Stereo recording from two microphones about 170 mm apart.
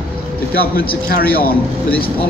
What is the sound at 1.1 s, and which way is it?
Speech, 60° left (ahead or behind).